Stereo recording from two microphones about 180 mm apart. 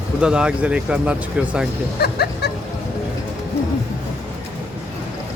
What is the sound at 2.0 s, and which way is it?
Speech, 60° left (ahead or behind).